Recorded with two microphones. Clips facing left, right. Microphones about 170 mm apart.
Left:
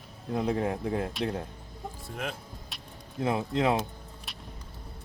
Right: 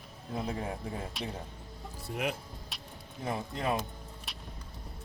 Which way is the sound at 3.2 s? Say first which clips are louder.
Left 7 dB; 90° left.